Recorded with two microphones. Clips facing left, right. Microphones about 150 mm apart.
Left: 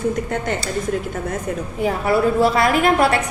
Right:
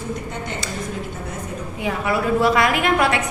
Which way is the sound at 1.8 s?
35° left (ahead or behind).